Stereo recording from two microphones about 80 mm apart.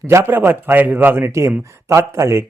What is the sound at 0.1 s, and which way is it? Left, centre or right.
A man's voice, right.